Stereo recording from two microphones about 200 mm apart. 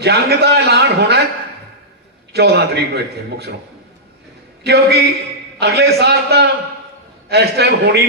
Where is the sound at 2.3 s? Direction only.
55° right (ahead or behind).